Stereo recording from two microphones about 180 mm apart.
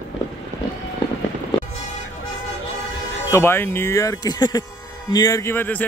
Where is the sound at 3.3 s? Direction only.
15° left (ahead or behind).